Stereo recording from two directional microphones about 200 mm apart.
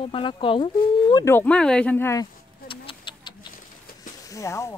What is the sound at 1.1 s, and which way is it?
Speech, 10° left (ahead or behind).